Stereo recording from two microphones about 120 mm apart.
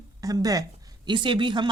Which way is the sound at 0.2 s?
30° right (ahead or behind).